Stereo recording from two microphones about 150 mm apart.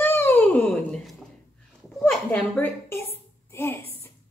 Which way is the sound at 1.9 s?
5° left (ahead or behind).